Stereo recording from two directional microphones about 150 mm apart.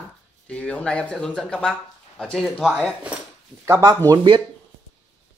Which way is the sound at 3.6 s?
20° right (ahead or behind).